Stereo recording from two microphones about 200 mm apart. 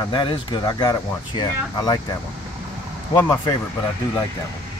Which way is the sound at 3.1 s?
15° left (ahead or behind).